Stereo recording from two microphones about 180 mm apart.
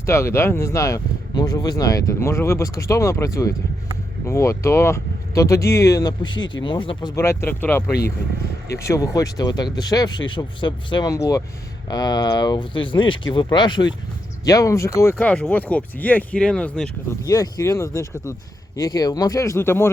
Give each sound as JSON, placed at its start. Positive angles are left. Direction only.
{"t": 0.0, "sound": "speech", "side_deg": 15}
{"t": 7.2, "sound": "speech", "side_deg": 15}
{"t": 17.2, "sound": "speech", "side_deg": 20}